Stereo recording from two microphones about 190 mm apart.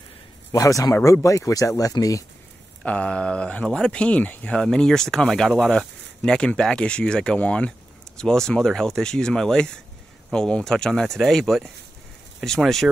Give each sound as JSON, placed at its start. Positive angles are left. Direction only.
{"t": 0.5, "sound": "speech", "side_deg": 15}
{"t": 2.8, "sound": "speech", "side_deg": 5}